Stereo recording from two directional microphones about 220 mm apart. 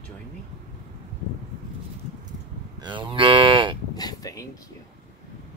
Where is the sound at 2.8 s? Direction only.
20° right (ahead or behind).